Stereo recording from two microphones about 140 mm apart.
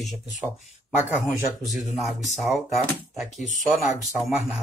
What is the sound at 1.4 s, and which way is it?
Speech, centre (ahead or behind).